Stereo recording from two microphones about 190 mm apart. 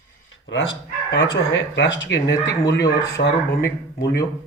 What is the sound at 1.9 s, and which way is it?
Speech, 70° left (ahead or behind).